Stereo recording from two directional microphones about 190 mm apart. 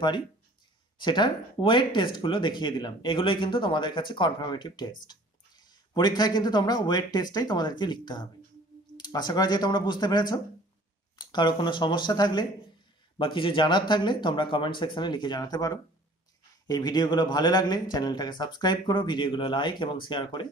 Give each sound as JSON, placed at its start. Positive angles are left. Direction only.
{"t": 0.9, "sound": "speech", "side_deg": 25}